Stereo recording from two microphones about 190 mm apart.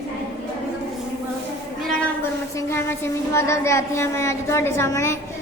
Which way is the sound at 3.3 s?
15° left (ahead or behind).